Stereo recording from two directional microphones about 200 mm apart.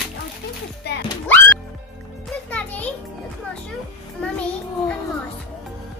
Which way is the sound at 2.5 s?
5° left (ahead or behind).